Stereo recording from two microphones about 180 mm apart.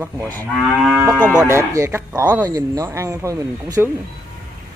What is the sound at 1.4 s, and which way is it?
Speech, 15° right (ahead or behind).